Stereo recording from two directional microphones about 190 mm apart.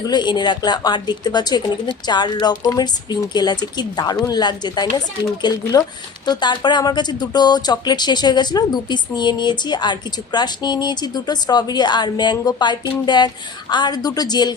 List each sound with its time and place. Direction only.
0.1 s speech: 25° left (ahead or behind)